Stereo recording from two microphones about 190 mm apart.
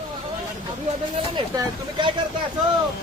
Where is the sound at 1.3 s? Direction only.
25° right (ahead or behind).